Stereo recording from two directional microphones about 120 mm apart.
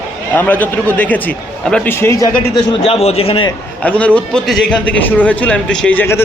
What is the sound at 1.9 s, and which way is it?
Speech, 20° left (ahead or behind).